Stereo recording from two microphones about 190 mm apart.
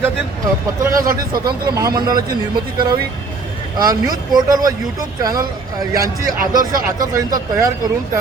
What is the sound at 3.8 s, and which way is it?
Speech, 20° right (ahead or behind).